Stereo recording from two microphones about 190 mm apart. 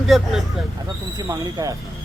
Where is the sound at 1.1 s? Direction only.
20° right (ahead or behind).